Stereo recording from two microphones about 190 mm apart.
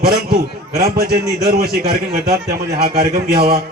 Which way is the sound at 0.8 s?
55° right (ahead or behind).